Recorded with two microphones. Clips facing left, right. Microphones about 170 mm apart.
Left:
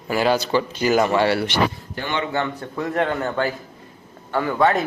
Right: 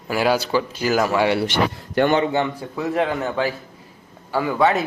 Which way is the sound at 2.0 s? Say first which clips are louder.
Right 12 dB; 70° right (ahead or behind).